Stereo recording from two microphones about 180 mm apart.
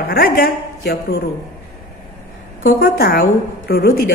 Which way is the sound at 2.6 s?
60° left (ahead or behind).